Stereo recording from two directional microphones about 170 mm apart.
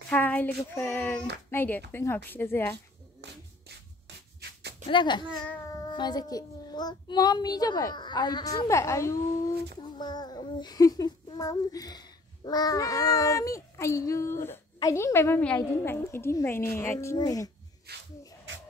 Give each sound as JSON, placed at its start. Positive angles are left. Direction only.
{"t": 0.1, "sound": "speech", "side_deg": 10}
{"t": 3.2, "sound": "music", "side_deg": -90}
{"t": 4.8, "sound": "a child's voice", "side_deg": 25}
{"t": 17.9, "sound": "speech", "side_deg": -70}